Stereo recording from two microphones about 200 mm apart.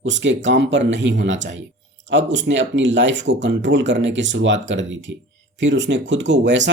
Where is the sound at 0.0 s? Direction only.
65° right (ahead or behind).